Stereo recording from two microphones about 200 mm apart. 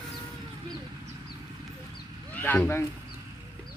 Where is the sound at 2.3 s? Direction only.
10° left (ahead or behind).